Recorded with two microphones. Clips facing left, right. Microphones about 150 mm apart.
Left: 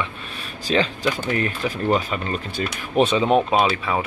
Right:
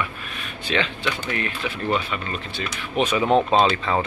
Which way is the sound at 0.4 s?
35° left (ahead or behind).